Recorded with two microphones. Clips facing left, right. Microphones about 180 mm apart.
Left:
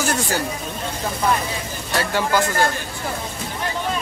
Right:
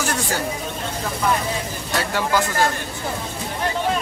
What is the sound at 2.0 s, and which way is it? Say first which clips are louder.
Speech: left 1 dB; centre (ahead or behind).